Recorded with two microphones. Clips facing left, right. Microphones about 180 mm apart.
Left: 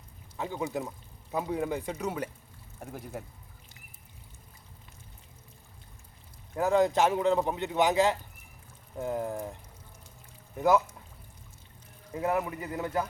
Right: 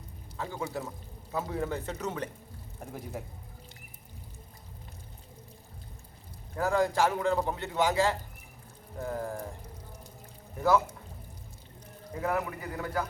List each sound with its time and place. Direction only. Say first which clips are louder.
0.3 s a man's voice: left 3 dB; 15° left (ahead or behind); by 3.2 s centre (ahead or behind)
6.6 s speech: left 2 dB; 20° left (ahead or behind)
12.2 s speech: left 2 dB; 20° left (ahead or behind)